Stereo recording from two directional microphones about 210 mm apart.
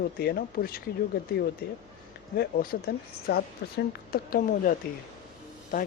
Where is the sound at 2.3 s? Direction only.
45° left (ahead or behind).